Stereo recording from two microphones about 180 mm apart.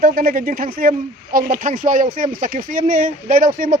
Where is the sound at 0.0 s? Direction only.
50° right (ahead or behind).